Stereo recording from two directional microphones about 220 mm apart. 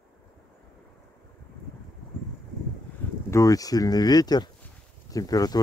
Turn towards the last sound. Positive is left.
turn(degrees=15)  # may be behind; listen again after turning